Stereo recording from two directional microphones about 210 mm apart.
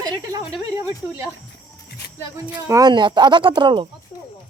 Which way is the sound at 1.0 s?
10° right (ahead or behind).